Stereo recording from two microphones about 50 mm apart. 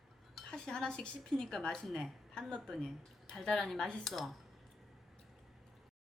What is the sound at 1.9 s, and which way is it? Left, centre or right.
A woman's voice, centre.